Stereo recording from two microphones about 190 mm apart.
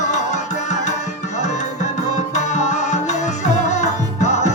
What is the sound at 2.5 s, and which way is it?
Music, 40° left (ahead or behind).